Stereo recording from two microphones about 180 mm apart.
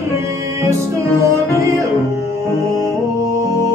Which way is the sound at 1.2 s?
15° right (ahead or behind).